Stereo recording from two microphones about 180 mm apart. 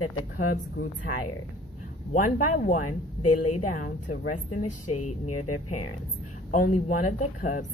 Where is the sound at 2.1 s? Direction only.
45° left (ahead or behind).